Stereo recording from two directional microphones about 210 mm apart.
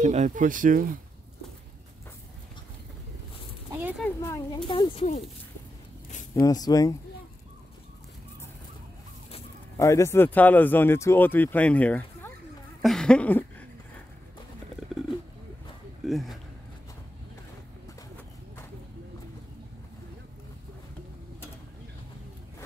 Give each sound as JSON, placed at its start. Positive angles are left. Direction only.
{"t": 0.0, "sound": "speech", "side_deg": -35}
{"t": 4.0, "sound": "speech", "side_deg": 15}
{"t": 6.4, "sound": "speech", "side_deg": 20}
{"t": 9.8, "sound": "speech", "side_deg": 15}
{"t": 12.8, "sound": "a sound", "side_deg": 5}
{"t": 16.0, "sound": "speech", "side_deg": 0}